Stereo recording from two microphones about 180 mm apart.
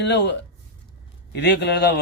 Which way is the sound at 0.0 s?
75° left (ahead or behind).